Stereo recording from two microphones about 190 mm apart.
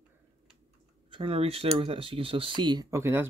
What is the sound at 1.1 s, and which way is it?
Speech, 30° right (ahead or behind).